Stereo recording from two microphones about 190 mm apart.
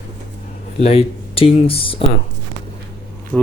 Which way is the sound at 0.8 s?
30° left (ahead or behind).